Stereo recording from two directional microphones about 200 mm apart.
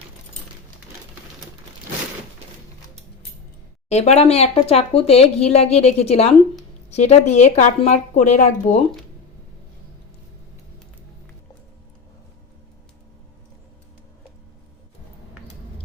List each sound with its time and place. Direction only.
3.8 s speech: 35° left (ahead or behind)